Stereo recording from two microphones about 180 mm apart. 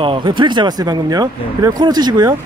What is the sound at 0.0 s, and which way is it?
Speech, 30° right (ahead or behind).